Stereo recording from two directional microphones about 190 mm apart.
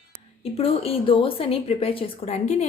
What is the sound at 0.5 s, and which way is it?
A woman's voice, 30° left (ahead or behind).